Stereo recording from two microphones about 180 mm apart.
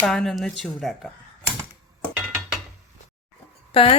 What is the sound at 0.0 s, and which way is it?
Speech, 5° left (ahead or behind).